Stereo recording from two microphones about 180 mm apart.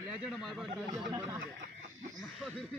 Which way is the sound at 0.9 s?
15° right (ahead or behind).